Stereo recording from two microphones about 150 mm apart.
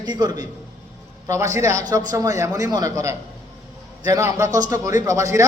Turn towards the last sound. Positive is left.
turn(degrees=-20)  # may be behind; listen again after turning